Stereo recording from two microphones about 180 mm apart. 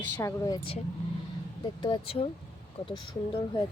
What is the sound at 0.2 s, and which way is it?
Speech, 20° left (ahead or behind).